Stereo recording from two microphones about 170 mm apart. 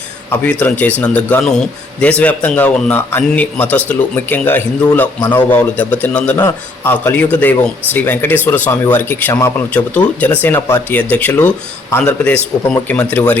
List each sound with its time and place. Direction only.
0.3 s a man's voice: 10° left (ahead or behind)